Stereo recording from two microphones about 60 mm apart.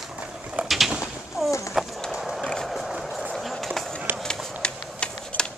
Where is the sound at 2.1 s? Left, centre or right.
Centre.